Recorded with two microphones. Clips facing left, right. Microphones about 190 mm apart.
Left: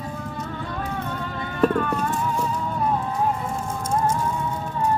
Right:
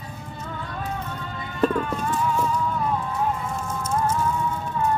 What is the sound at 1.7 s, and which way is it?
Music, 55° left (ahead or behind).